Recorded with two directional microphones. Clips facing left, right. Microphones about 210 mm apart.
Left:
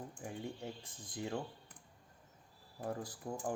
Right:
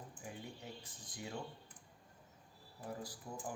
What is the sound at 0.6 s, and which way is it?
Speech, 55° left (ahead or behind).